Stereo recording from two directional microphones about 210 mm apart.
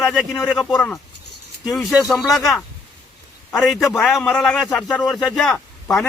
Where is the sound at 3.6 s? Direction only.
Centre (ahead or behind).